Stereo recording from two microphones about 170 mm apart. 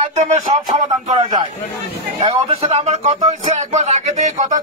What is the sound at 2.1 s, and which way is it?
Speech, 30° right (ahead or behind).